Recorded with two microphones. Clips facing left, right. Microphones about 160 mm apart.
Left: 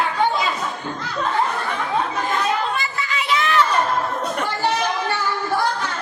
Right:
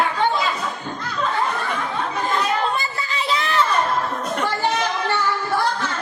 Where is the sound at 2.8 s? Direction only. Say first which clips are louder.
Even; 35° right (ahead or behind).